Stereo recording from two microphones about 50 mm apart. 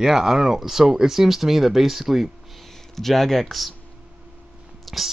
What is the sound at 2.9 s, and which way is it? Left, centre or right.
Speech, centre.